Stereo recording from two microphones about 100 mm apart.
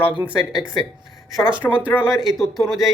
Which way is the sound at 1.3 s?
5° right (ahead or behind).